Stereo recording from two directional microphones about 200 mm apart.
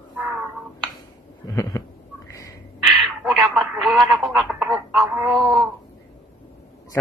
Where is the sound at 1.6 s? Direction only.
15° left (ahead or behind).